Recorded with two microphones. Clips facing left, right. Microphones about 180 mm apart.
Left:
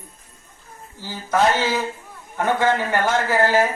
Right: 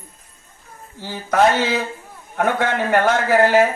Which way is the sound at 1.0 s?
60° right (ahead or behind).